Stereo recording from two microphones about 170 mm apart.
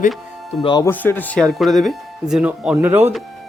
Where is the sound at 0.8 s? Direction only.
10° left (ahead or behind); by 3.1 s 10° right (ahead or behind).